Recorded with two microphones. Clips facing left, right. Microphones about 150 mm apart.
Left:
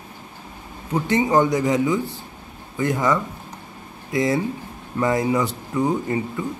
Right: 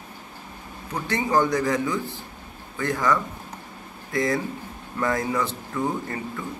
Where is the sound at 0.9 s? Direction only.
20° left (ahead or behind).